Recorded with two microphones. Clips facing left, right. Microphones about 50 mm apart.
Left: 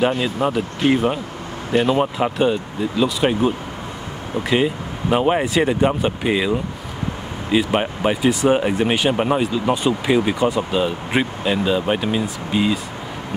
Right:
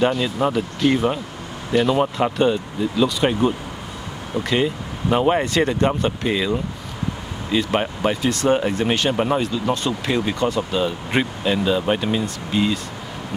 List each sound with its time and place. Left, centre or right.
0.2 s speech: centre